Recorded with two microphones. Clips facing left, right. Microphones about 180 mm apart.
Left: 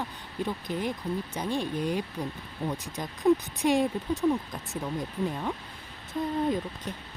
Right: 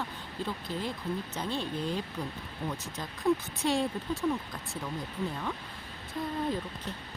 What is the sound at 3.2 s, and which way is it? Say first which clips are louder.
Speech: left 5 dB; 15° left (ahead or behind).